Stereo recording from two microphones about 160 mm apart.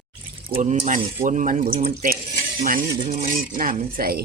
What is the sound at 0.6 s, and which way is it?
Speech, 50° right (ahead or behind).